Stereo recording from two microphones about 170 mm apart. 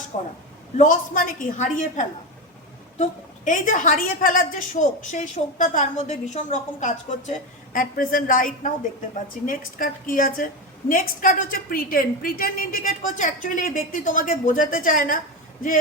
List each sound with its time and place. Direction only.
0.8 s a woman's voice: 50° left (ahead or behind)